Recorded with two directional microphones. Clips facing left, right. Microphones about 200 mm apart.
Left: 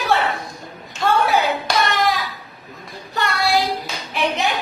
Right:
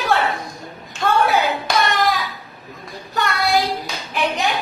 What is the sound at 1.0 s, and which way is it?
Clapping, centre (ahead or behind).